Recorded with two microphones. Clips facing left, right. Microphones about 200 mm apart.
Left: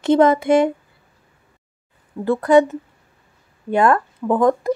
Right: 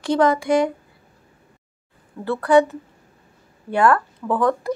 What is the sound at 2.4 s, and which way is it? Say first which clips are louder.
Speech: left 1 dB; 20° left (ahead or behind).